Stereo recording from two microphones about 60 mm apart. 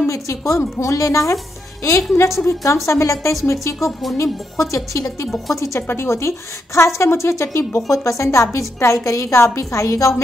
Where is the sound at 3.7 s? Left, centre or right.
Centre.